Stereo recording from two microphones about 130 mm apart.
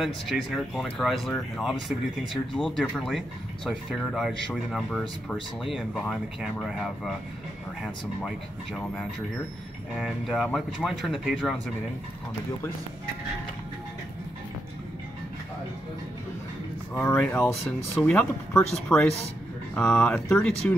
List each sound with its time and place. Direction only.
0.0 s speech: centre (ahead or behind)
9.9 s speech: 5° right (ahead or behind)
16.9 s speech: 10° left (ahead or behind)
18.9 s speech: 5° left (ahead or behind)